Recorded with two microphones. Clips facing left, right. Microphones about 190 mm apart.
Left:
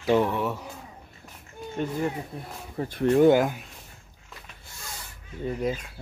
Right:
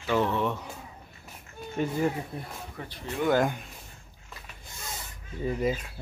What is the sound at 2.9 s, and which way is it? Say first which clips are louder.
Speech: left 13 dB; 50° left (ahead or behind).